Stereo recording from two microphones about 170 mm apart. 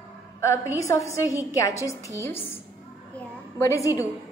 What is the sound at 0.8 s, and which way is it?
Speech, 15° left (ahead or behind).